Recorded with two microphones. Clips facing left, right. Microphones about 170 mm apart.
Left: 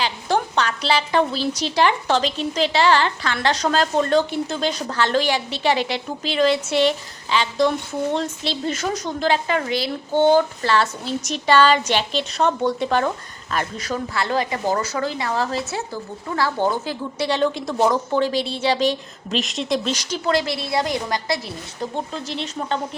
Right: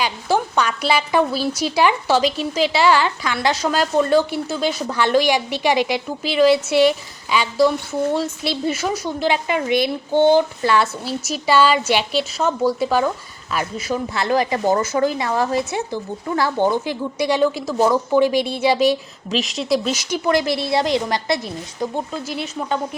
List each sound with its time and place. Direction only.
0.0 s a woman's voice: 10° right (ahead or behind)
14.1 s a woman's voice: 20° right (ahead or behind)
22.1 s a woman's voice: 10° right (ahead or behind)